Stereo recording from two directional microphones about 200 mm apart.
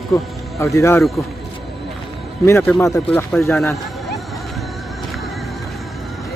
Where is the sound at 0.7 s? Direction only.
15° left (ahead or behind).